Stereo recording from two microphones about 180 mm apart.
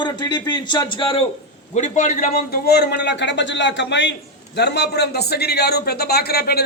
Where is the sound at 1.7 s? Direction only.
45° left (ahead or behind).